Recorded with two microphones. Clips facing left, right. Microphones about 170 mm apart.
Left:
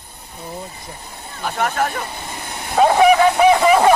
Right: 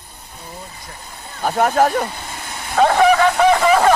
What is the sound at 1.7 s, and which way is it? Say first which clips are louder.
Speech: right 6 dB; 30° right (ahead or behind).